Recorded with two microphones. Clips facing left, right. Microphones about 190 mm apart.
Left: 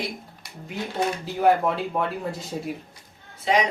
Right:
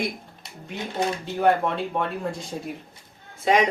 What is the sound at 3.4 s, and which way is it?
Speech, 50° right (ahead or behind).